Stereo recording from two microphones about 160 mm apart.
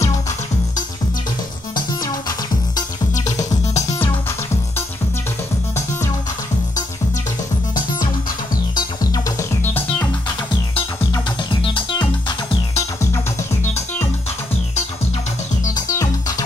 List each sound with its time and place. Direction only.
2.0 s music: 25° left (ahead or behind)
8.7 s music: 20° left (ahead or behind)
12.7 s music: 15° left (ahead or behind)
15.9 s music: 20° left (ahead or behind)